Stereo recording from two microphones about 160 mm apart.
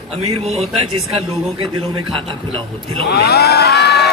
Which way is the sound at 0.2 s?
40° right (ahead or behind).